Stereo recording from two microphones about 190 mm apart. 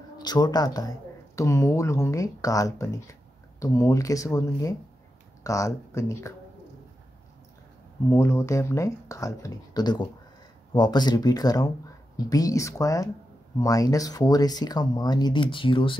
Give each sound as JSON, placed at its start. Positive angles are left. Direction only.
{"t": 0.2, "sound": "speech", "side_deg": 20}
{"t": 8.1, "sound": "speech", "side_deg": 15}